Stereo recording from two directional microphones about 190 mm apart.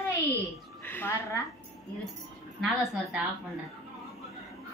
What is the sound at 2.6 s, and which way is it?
Speech, centre (ahead or behind).